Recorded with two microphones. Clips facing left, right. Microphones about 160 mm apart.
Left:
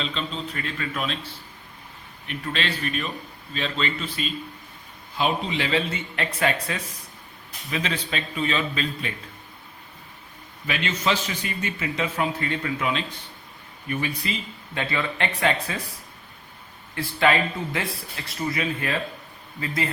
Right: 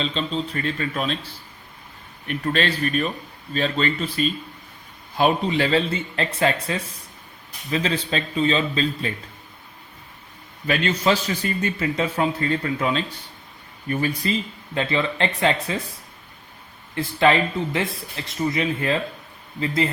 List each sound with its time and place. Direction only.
0.0 s a man's voice: 35° right (ahead or behind)
2.2 s a man's voice: 45° right (ahead or behind)
10.7 s a man's voice: 40° right (ahead or behind)
14.8 s speech: 25° right (ahead or behind)
16.9 s speech: 25° right (ahead or behind)